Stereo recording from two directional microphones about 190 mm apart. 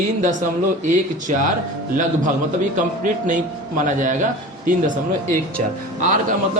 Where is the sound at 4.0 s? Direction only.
45° right (ahead or behind).